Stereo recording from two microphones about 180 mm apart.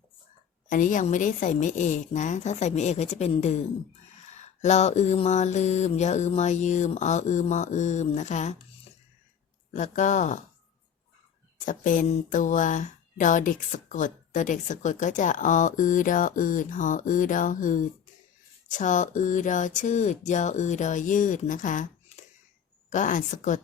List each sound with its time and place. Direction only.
0.7 s speech: 45° left (ahead or behind)
9.7 s speech: 45° left (ahead or behind)
11.6 s speech: 45° left (ahead or behind)